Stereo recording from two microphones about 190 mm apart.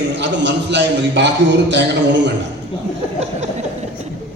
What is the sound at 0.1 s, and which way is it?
A man's voice, 65° right (ahead or behind).